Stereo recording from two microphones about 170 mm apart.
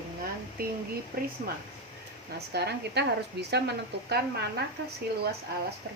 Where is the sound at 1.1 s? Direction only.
60° right (ahead or behind).